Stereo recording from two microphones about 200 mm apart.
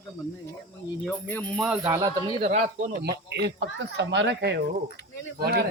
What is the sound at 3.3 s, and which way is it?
Speech, 55° right (ahead or behind).